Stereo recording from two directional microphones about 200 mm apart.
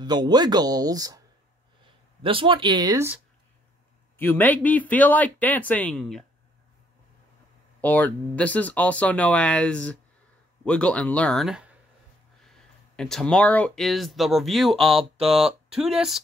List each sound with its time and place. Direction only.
0.0 s speech: 20° right (ahead or behind)
2.2 s speech: 25° right (ahead or behind)
4.2 s speech: 10° left (ahead or behind)
7.8 s speech: 5° left (ahead or behind)